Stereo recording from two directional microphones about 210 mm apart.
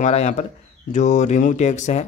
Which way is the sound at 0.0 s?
35° left (ahead or behind).